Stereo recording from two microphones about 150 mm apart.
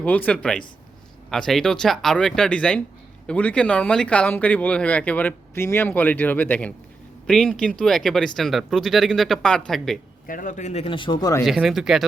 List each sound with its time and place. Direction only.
0.0 s speech: 10° left (ahead or behind)
10.2 s speech: 65° left (ahead or behind)
10.8 s speech: 35° left (ahead or behind)
11.4 s speech: centre (ahead or behind)